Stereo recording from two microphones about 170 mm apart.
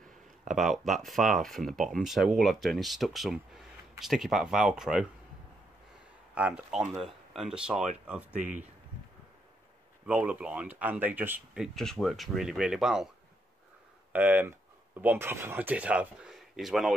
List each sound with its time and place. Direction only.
0.5 s speech: centre (ahead or behind)
6.3 s speech: 5° right (ahead or behind)
10.0 s speech: 10° right (ahead or behind)
14.1 s speech: 10° right (ahead or behind)